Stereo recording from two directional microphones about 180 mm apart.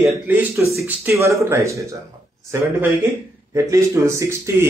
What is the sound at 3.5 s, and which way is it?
A man's voice, 15° right (ahead or behind).